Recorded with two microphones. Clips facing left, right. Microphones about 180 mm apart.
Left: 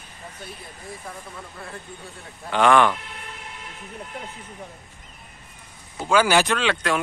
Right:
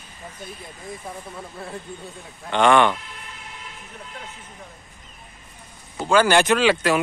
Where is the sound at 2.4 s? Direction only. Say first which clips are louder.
Right 1 dB; centre (ahead or behind).